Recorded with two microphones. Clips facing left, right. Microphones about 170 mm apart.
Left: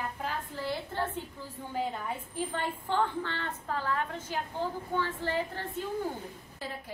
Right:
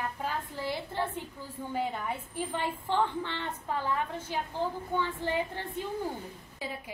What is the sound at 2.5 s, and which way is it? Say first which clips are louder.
A woman's voice: right 1 dB; 10° right (ahead or behind).